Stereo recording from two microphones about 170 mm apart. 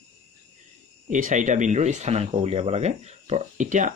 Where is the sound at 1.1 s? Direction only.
50° right (ahead or behind).